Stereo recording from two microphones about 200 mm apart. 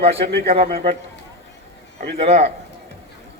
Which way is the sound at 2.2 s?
30° right (ahead or behind).